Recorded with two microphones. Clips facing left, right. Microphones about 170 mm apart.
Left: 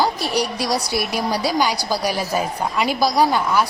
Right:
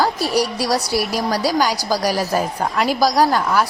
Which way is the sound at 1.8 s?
10° right (ahead or behind).